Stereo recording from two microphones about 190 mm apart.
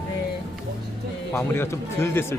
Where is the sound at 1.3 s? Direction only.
15° left (ahead or behind).